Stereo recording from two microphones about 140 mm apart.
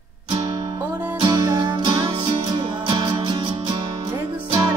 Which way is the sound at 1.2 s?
30° right (ahead or behind).